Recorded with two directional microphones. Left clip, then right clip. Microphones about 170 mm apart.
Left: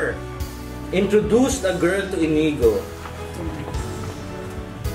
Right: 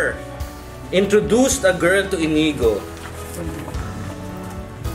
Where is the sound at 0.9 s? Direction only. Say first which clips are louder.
Right 2 dB; 15° right (ahead or behind).